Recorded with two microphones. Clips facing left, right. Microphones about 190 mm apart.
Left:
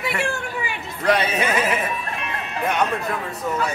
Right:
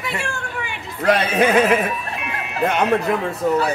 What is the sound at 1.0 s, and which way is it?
Speech, 50° right (ahead or behind).